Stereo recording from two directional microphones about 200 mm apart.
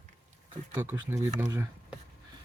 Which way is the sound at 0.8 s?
10° right (ahead or behind).